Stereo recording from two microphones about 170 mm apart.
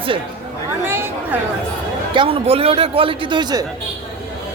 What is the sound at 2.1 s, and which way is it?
A man's voice, 30° right (ahead or behind).